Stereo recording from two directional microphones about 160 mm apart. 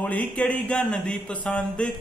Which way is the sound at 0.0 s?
10° left (ahead or behind).